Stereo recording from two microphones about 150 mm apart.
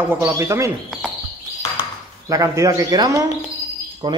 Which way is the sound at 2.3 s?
20° right (ahead or behind).